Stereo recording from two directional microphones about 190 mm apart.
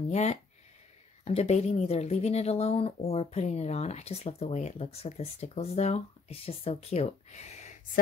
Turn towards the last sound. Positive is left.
turn(degrees=35)  # may be behind; listen again after turning